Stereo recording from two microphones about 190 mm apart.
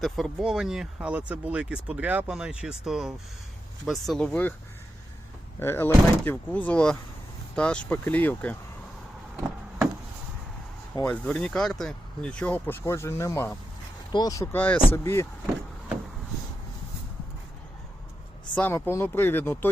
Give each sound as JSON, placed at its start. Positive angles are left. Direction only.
{"t": 0.0, "sound": "speech", "side_deg": 0}
{"t": 5.5, "sound": "speech", "side_deg": 10}
{"t": 11.0, "sound": "speech", "side_deg": 5}
{"t": 14.4, "sound": "speech", "side_deg": 10}
{"t": 18.5, "sound": "speech", "side_deg": 10}